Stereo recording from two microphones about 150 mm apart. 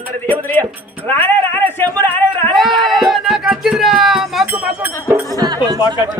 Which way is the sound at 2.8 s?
Centre (ahead or behind).